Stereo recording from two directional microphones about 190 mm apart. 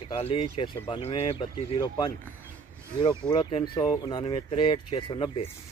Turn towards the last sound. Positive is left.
turn(degrees=30)  # may be behind; listen again after turning